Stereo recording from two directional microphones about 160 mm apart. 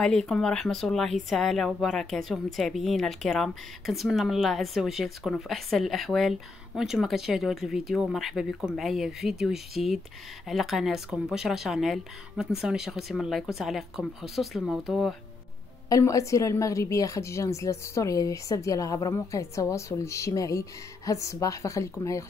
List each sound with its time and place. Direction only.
0.0 s speech: 5° left (ahead or behind)
15.9 s a woman's voice: 20° left (ahead or behind)